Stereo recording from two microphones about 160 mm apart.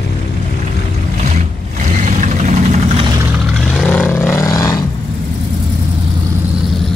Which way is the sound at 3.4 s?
Centre (ahead or behind).